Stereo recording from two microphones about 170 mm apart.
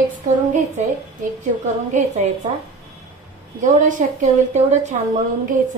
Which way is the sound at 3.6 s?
50° right (ahead or behind).